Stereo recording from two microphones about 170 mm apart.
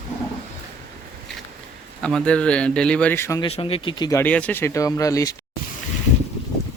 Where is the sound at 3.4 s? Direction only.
35° left (ahead or behind).